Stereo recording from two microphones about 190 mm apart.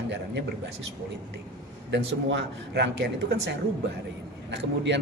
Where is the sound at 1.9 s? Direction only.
65° right (ahead or behind).